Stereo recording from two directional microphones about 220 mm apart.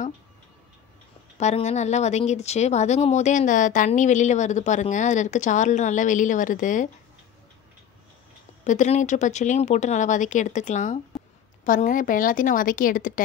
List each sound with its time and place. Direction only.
1.4 s speech: 30° left (ahead or behind)
8.6 s speech: 30° left (ahead or behind)